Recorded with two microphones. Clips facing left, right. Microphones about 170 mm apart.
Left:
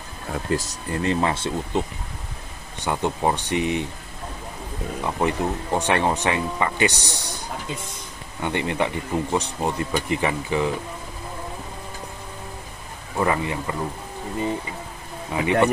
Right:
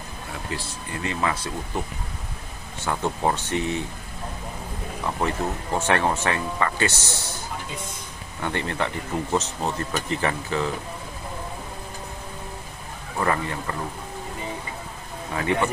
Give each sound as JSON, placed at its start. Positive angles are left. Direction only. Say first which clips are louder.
{"t": 0.3, "sound": "speech", "louder": "left 8 dB", "side_deg": 45}
{"t": 5.0, "sound": "speech", "louder": "left 2 dB", "side_deg": 15}
{"t": 13.2, "sound": "speech", "louder": "left 2 dB", "side_deg": 15}